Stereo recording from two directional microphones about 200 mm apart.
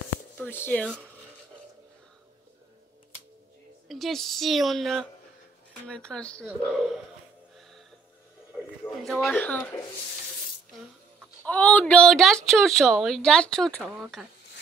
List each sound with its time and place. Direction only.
0.4 s speech: 10° left (ahead or behind)
3.9 s speech: centre (ahead or behind)
8.8 s speech: centre (ahead or behind)
11.4 s speech: 5° left (ahead or behind)